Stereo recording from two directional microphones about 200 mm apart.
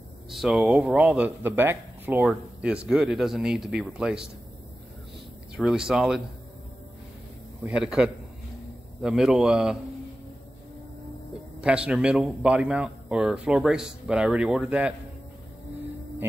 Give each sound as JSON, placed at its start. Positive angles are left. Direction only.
{"t": 0.3, "sound": "speech", "side_deg": 0}
{"t": 5.6, "sound": "speech", "side_deg": -5}
{"t": 7.6, "sound": "speech", "side_deg": -5}
{"t": 11.6, "sound": "speech", "side_deg": -5}